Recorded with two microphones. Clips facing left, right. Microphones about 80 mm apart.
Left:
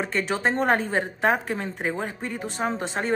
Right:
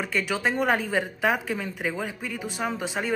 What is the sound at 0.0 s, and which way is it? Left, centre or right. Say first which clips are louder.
Speech: left 2 dB; left.